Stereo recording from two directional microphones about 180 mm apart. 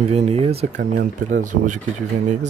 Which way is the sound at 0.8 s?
50° right (ahead or behind).